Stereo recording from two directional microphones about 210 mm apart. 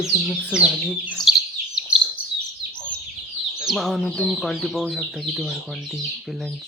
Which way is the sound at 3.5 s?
Centre (ahead or behind).